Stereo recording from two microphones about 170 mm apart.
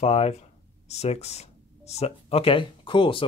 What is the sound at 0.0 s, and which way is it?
Speech, 40° left (ahead or behind).